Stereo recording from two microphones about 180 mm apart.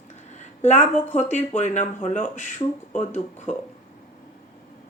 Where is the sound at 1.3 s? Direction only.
40° left (ahead or behind).